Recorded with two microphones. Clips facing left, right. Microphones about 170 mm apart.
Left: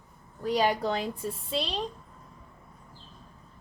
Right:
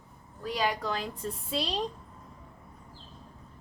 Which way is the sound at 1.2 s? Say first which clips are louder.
Left 1 dB; centre (ahead or behind).